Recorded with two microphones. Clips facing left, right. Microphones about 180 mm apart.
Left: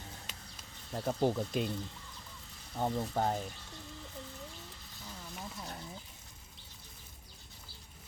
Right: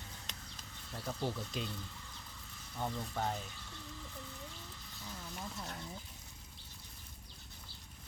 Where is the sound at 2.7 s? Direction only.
45° left (ahead or behind).